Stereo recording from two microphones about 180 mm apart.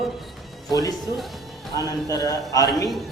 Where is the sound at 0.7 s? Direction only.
20° left (ahead or behind).